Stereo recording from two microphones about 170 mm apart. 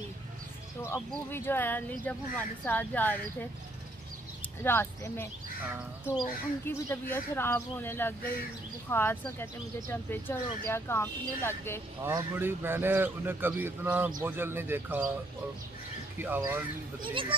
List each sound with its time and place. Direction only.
0.8 s speech: 15° left (ahead or behind)
4.6 s speech: 15° left (ahead or behind)
6.6 s speech: 15° left (ahead or behind)
12.0 s speech: 15° right (ahead or behind)
16.2 s speech: 15° right (ahead or behind)
17.0 s speech: 30° right (ahead or behind)